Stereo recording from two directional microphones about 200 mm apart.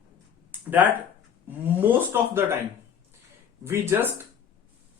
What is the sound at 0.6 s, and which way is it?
Speech, 10° right (ahead or behind).